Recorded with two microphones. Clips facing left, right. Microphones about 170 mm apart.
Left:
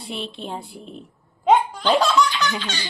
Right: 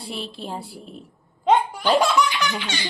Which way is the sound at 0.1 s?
Centre (ahead or behind).